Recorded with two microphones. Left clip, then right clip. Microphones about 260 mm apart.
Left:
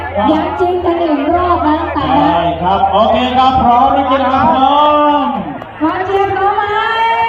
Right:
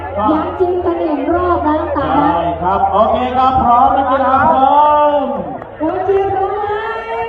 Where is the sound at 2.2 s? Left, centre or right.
Left.